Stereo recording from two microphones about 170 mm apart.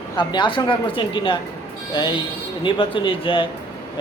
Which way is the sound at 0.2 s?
25° left (ahead or behind).